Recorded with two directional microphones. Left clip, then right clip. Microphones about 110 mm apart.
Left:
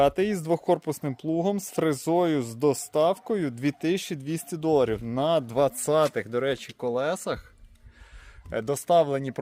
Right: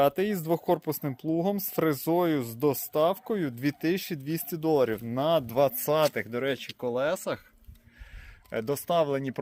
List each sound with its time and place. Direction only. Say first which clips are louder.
0.0 s speech: left 2 dB; 40° left (ahead or behind)
8.4 s speech: left 4 dB; 45° left (ahead or behind)